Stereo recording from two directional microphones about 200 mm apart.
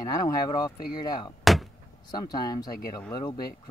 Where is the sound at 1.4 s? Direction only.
Centre (ahead or behind).